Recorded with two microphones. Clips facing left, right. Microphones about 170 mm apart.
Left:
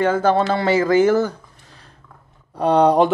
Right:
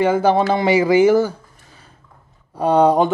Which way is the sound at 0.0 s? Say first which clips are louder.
Right 2 dB; 10° right (ahead or behind).